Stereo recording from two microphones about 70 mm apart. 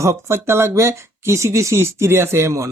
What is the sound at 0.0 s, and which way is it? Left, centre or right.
Speech, right.